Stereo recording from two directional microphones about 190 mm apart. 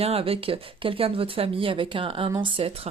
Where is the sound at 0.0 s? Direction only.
30° right (ahead or behind).